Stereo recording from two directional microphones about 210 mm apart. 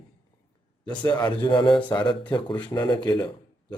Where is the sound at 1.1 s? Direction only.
20° left (ahead or behind).